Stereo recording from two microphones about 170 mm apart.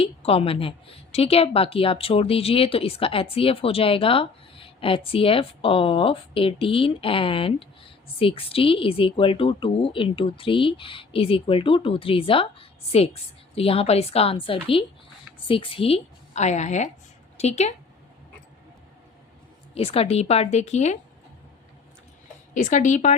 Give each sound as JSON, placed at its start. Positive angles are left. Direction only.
{"t": 0.0, "sound": "a woman's voice", "side_deg": 35}
{"t": 19.7, "sound": "a woman's voice", "side_deg": 35}
{"t": 22.5, "sound": "speech", "side_deg": 50}